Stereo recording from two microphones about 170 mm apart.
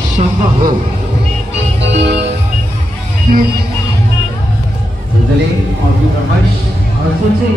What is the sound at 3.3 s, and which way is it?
Speech, 60° right (ahead or behind).